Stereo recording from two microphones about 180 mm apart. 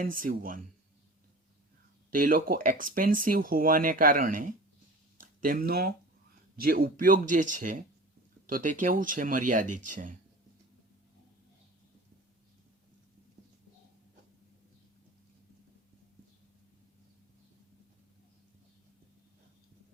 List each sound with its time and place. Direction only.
0.0 s speech: 50° right (ahead or behind)
2.0 s speech: 50° right (ahead or behind)